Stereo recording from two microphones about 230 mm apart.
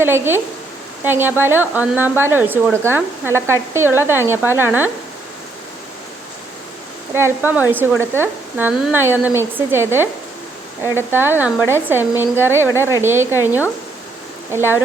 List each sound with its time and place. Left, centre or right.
0.0 s a woman's voice: centre
7.1 s a woman's voice: centre
11.1 s a woman's voice: centre